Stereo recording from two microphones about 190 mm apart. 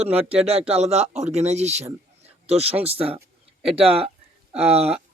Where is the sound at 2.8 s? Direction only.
30° right (ahead or behind).